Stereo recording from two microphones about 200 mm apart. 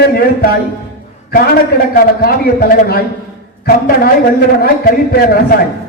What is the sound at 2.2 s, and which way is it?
Speech, 45° left (ahead or behind).